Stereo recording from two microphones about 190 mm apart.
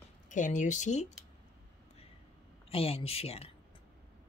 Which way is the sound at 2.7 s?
30° left (ahead or behind).